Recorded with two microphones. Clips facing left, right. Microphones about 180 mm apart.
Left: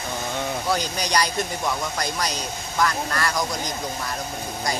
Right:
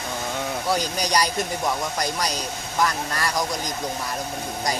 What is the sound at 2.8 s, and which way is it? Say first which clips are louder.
Speech: left 1 dB; 15° right (ahead or behind).